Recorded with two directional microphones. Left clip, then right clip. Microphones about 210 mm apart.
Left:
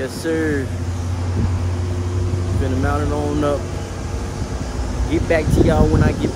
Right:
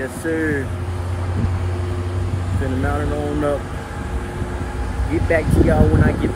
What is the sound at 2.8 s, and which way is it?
Speech, 5° left (ahead or behind).